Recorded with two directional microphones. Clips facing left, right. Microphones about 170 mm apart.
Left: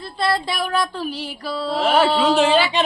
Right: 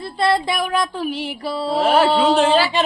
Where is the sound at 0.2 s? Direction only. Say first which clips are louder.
Right 3 dB; 25° right (ahead or behind).